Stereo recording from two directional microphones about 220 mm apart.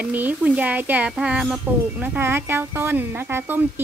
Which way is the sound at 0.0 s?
5° right (ahead or behind).